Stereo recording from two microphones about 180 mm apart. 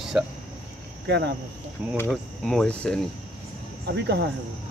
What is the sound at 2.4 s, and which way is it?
Speech, 5° left (ahead or behind).